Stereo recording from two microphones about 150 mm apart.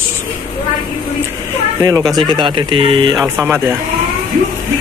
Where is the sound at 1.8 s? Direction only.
25° right (ahead or behind).